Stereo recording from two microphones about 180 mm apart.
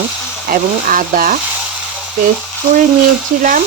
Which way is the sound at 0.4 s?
50° right (ahead or behind).